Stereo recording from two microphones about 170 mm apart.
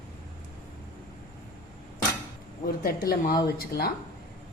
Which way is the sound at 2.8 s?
60° left (ahead or behind).